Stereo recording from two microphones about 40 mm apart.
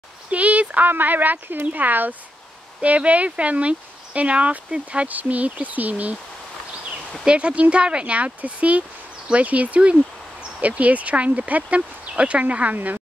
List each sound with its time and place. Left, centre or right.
0.3 s speech: right
0.8 s speech: right
2.8 s speech: right
5.0 s speech: right
7.2 s speech: right